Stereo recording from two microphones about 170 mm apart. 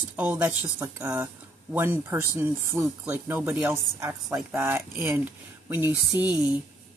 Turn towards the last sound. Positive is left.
turn(degrees=-5)  # may be behind; listen again after turning